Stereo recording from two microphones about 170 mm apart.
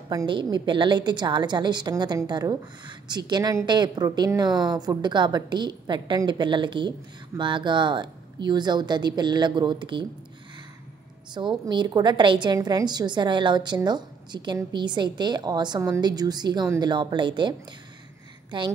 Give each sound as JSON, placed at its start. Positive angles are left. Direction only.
{"t": 0.1, "sound": "a woman's voice", "side_deg": -25}
{"t": 11.3, "sound": "a woman's voice", "side_deg": -25}